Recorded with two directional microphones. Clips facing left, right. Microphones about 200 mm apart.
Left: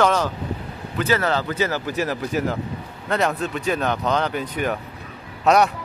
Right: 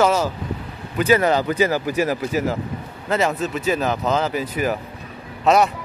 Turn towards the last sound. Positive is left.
turn(degrees=0)  # may be behind; listen again after turning